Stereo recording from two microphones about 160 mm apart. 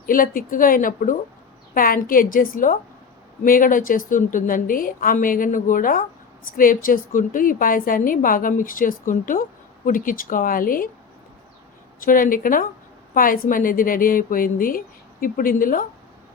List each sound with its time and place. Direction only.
0.0 s a woman's voice: 60° left (ahead or behind)
11.9 s a woman's voice: 60° left (ahead or behind)